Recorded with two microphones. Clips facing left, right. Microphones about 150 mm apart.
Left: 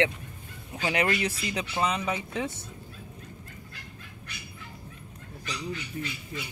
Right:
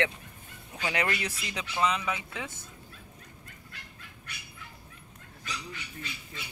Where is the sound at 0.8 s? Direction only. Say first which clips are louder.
Left 4 dB; 30° left (ahead or behind).